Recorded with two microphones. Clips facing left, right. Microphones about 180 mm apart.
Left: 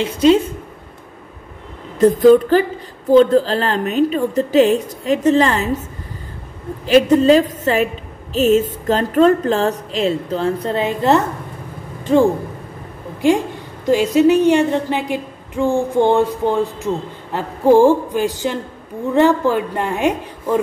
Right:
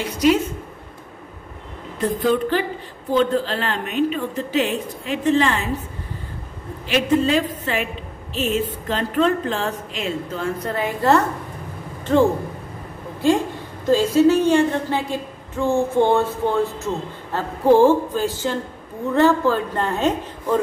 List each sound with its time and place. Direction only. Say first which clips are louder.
0.0 s a woman's voice: left 5 dB; 25° left (ahead or behind)
2.0 s a woman's voice: left 10 dB; 40° left (ahead or behind)
6.9 s a woman's voice: left 7 dB; 40° left (ahead or behind); by 20.5 s 15° left (ahead or behind)